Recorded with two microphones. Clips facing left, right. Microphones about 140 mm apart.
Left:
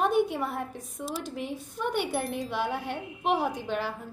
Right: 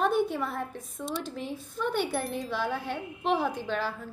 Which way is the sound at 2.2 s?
Centre (ahead or behind).